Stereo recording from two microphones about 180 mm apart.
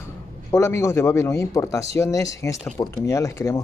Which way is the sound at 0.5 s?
15° left (ahead or behind).